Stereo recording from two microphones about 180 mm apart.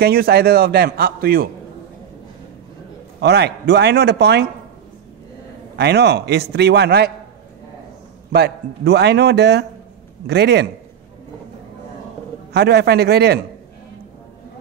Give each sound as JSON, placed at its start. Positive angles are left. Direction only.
{"t": 0.0, "sound": "a man's voice", "side_deg": -60}
{"t": 3.2, "sound": "a man's voice", "side_deg": -65}
{"t": 5.8, "sound": "a man's voice", "side_deg": -65}
{"t": 8.3, "sound": "a man's voice", "side_deg": -60}
{"t": 12.5, "sound": "a man's voice", "side_deg": -65}